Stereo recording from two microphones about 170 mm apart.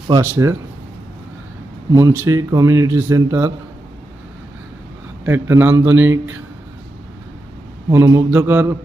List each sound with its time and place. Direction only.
0.1 s a man's voice: 15° right (ahead or behind)
2.0 s a man's voice: 20° right (ahead or behind)
5.2 s a man's voice: 15° right (ahead or behind)
7.9 s a man's voice: 20° right (ahead or behind)